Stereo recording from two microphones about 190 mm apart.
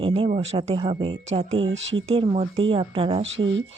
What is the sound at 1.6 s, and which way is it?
Speech, 85° right.